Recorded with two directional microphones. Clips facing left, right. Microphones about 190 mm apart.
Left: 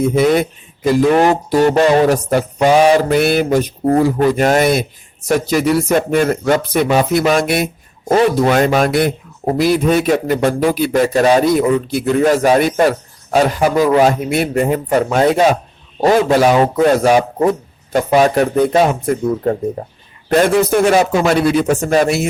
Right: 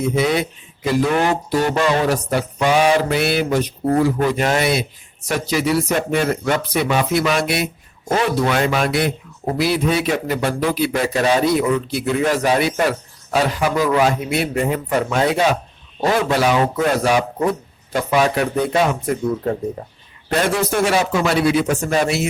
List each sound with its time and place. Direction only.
0.2 s speech: 50° left (ahead or behind)
20.7 s speech: 50° left (ahead or behind)